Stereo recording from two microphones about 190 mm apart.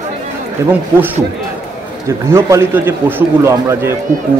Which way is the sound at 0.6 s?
15° right (ahead or behind).